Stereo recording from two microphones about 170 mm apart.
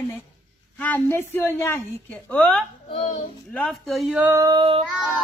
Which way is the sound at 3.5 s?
Centre (ahead or behind).